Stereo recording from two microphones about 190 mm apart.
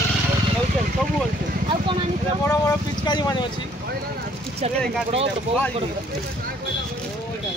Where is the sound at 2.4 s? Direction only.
20° left (ahead or behind).